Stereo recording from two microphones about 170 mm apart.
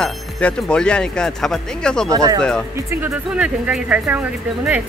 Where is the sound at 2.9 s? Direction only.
10° right (ahead or behind).